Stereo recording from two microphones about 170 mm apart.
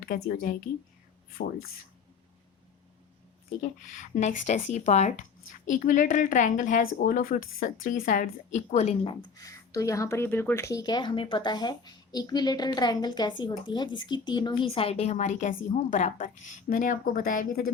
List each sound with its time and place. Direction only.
0.0 s a woman's voice: 55° left (ahead or behind)
4.1 s speech: 45° left (ahead or behind)